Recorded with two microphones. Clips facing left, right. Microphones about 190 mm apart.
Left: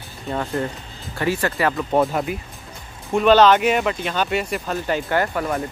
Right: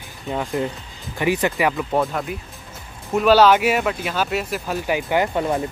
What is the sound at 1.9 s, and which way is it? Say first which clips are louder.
Speech: left 2 dB; 5° left (ahead or behind).